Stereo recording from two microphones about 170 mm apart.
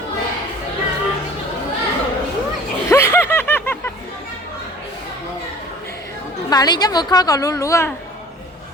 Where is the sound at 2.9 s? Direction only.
15° left (ahead or behind).